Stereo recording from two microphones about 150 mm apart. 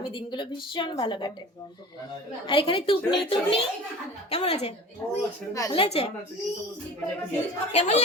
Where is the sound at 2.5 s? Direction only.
35° left (ahead or behind).